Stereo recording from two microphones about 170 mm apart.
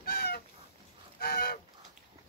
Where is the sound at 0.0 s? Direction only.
65° left (ahead or behind).